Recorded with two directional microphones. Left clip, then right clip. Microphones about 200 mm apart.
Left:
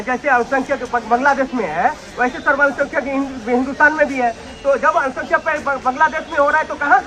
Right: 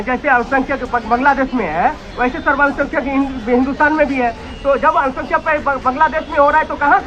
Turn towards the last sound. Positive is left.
turn(degrees=40)  # may be behind; listen again after turning